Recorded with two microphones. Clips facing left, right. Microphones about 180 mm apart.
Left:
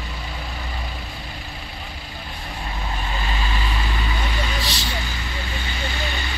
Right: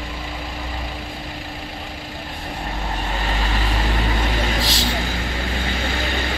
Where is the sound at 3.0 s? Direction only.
65° right (ahead or behind).